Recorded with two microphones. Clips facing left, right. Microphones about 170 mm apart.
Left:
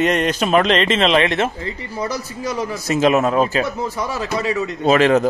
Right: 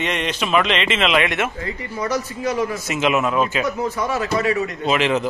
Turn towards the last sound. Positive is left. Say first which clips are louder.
# left 5 dB
turn(degrees=45)  # may be behind; listen again after turning